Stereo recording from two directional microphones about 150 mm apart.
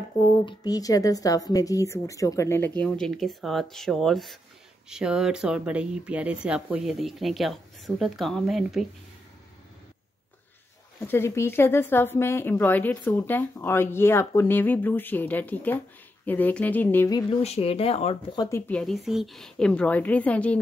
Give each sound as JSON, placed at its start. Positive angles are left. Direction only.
{"t": 0.5, "sound": "a woman's voice", "side_deg": 25}
{"t": 2.8, "sound": "speech", "side_deg": 5}
{"t": 11.1, "sound": "speech", "side_deg": 15}
{"t": 17.4, "sound": "speech", "side_deg": 45}
{"t": 18.7, "sound": "speech", "side_deg": 5}